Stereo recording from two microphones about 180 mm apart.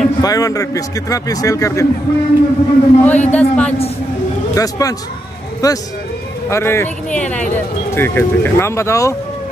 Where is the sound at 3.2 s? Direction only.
10° left (ahead or behind).